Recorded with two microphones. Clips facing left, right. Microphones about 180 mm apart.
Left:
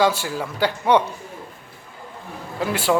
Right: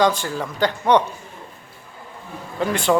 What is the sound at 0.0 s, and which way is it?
Speech, 10° left (ahead or behind).